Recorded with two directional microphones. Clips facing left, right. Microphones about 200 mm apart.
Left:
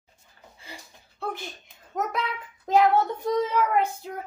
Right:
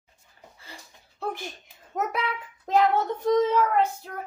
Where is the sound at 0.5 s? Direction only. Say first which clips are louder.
Left 3 dB; 15° left (ahead or behind).